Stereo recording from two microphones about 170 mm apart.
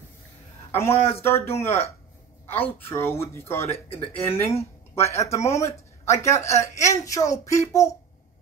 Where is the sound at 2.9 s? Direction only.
15° left (ahead or behind).